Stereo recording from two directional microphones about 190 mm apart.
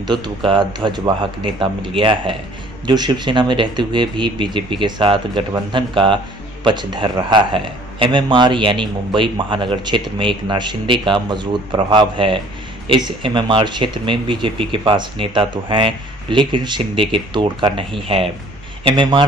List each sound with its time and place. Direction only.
0.0 s a man's voice: 25° right (ahead or behind)